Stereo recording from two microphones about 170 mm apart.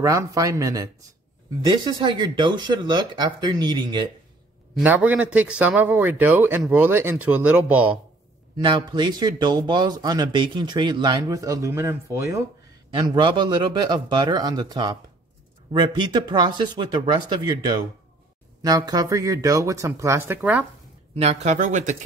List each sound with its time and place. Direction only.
0.0 s speech: 20° right (ahead or behind)
4.8 s a man's voice: 10° right (ahead or behind)
8.6 s speech: 25° right (ahead or behind)
18.6 s speech: 20° right (ahead or behind)
21.1 s speech: 40° right (ahead or behind)